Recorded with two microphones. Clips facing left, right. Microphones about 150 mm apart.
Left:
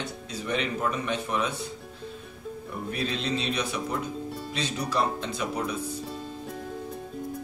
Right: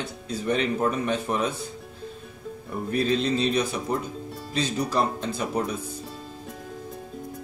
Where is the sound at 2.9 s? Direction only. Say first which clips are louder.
Right 6 dB; 40° right (ahead or behind).